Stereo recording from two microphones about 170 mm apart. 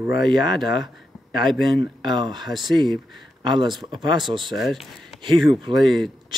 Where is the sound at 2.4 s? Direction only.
Centre (ahead or behind).